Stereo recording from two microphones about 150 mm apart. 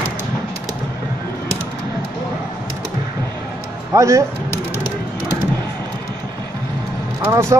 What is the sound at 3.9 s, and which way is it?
Speech, 20° right (ahead or behind).